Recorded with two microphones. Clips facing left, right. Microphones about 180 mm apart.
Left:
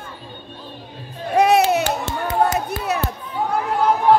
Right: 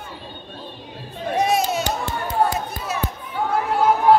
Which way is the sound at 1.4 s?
65° left (ahead or behind).